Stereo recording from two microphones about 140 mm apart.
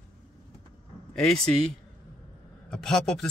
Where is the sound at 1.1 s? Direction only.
5° left (ahead or behind).